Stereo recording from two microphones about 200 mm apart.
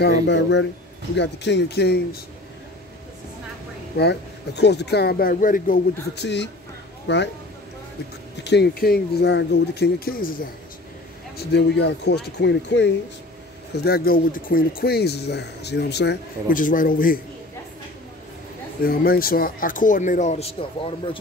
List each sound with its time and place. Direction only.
0.0 s speech: 60° left (ahead or behind)
4.0 s speech: 55° left (ahead or behind)
6.2 s speech: 60° left (ahead or behind)
8.5 s speech: 55° left (ahead or behind)
11.3 s speech: 55° left (ahead or behind)
13.8 s speech: 50° left (ahead or behind)
18.8 s speech: 45° left (ahead or behind); by 21.2 s 25° left (ahead or behind)